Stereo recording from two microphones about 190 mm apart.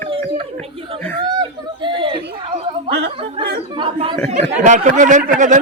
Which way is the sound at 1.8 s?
25° right (ahead or behind).